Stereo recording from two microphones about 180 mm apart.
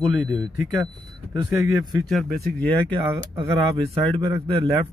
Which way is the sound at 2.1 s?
5° left (ahead or behind).